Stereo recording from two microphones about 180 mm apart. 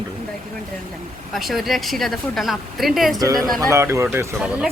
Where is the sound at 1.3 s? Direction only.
Centre (ahead or behind).